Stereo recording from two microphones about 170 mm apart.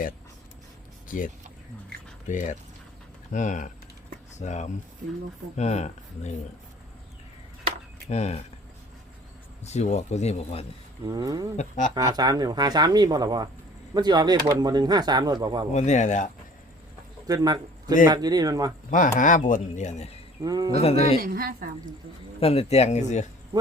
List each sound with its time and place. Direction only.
1.0 s speech: 50° left (ahead or behind)
8.1 s speech: 40° left (ahead or behind)
9.6 s speech: 40° left (ahead or behind)
11.0 s speech: 25° right (ahead or behind)
15.7 s speech: 45° left (ahead or behind)
17.2 s a man's voice: 20° right (ahead or behind)
18.9 s speech: 50° left (ahead or behind)
20.4 s speech: 20° right (ahead or behind)
20.7 s speech: 35° left (ahead or behind)
21.2 s speech: 60° right (ahead or behind)
22.4 s speech: 35° left (ahead or behind)